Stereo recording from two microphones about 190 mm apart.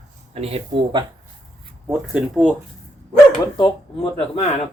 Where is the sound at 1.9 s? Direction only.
5° right (ahead or behind).